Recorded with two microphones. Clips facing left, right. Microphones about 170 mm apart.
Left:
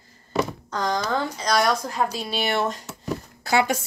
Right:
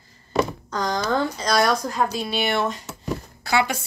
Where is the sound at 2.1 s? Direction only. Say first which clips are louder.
Right 1 dB; 40° left (ahead or behind).